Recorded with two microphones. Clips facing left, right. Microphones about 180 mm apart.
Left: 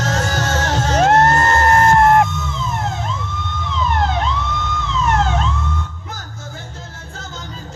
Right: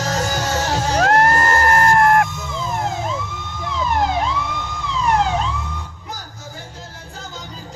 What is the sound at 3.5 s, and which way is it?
Police car, 10° right (ahead or behind).